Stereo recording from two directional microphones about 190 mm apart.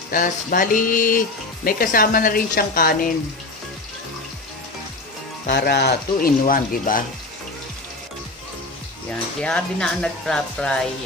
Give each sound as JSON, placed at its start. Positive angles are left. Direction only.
{"t": 0.1, "sound": "speech", "side_deg": 45}
{"t": 5.5, "sound": "speech", "side_deg": 60}
{"t": 9.4, "sound": "speech", "side_deg": 5}